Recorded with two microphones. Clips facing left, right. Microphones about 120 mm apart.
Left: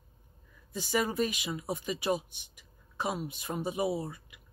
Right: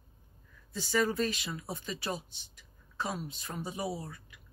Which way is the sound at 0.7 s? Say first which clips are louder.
Even; 15° left (ahead or behind).